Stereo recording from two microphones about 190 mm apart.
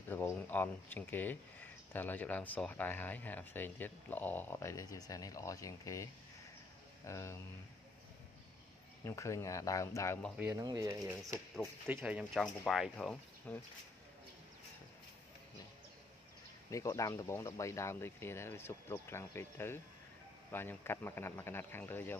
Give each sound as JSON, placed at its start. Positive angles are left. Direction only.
{"t": 0.1, "sound": "speech", "side_deg": 10}
{"t": 7.1, "sound": "speech", "side_deg": 15}
{"t": 9.0, "sound": "speech", "side_deg": 15}
{"t": 10.3, "sound": "speech", "side_deg": -10}
{"t": 10.6, "sound": "speech", "side_deg": -20}
{"t": 11.9, "sound": "speech", "side_deg": -5}
{"t": 16.7, "sound": "speech", "side_deg": 15}